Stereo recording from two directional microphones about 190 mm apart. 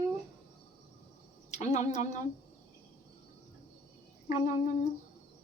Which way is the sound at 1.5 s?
40° left (ahead or behind).